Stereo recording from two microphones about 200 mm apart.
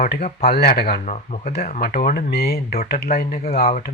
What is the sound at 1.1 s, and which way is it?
Speech, 35° left (ahead or behind).